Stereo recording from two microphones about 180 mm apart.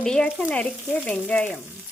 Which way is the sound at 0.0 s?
5° left (ahead or behind).